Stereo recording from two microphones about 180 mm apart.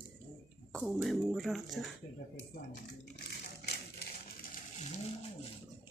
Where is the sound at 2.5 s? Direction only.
60° left (ahead or behind).